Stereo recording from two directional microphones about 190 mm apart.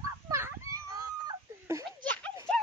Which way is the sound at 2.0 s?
5° left (ahead or behind).